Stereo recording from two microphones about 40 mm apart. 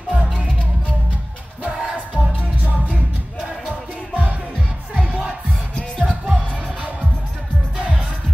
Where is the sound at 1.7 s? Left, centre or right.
Centre.